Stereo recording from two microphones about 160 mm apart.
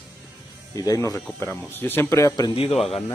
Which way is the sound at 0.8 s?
20° left (ahead or behind).